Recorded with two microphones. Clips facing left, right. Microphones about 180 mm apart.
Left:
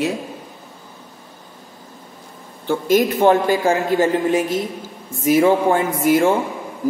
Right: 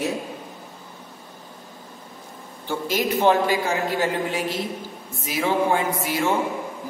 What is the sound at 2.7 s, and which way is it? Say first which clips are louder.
A man's voice: left 7 dB; 50° left (ahead or behind).